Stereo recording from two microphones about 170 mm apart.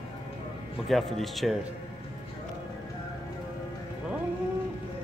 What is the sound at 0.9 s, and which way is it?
Speech, centre (ahead or behind).